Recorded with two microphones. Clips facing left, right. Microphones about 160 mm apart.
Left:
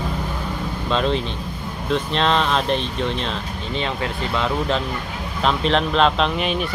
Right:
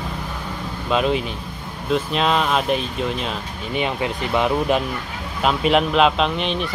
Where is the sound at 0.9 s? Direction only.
10° right (ahead or behind).